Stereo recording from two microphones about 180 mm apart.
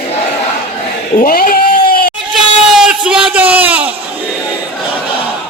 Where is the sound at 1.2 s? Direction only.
50° left (ahead or behind).